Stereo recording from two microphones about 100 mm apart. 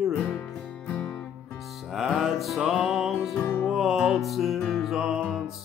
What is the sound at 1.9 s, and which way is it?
Music, centre (ahead or behind).